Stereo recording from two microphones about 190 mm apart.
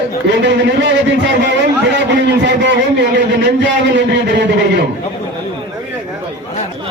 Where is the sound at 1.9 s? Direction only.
65° right (ahead or behind).